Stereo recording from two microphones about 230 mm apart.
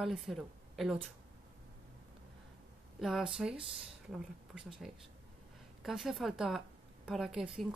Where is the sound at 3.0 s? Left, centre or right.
Centre.